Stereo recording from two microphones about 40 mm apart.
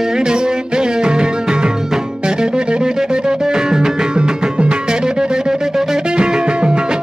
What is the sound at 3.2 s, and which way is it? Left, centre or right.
Music, centre.